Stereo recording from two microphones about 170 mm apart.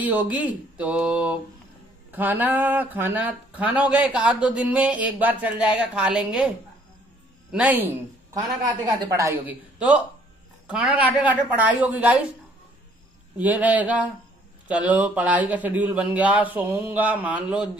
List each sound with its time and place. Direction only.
0.0 s speech: 10° right (ahead or behind)
7.5 s a woman's voice: 10° right (ahead or behind)
9.8 s speech: 5° right (ahead or behind)
13.4 s speech: 10° right (ahead or behind)